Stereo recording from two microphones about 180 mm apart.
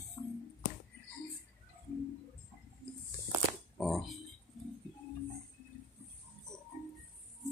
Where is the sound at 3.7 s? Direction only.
Centre (ahead or behind).